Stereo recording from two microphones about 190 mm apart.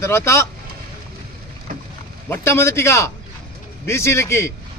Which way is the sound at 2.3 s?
15° left (ahead or behind).